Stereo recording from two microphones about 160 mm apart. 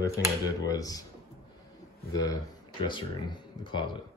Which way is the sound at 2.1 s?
20° left (ahead or behind).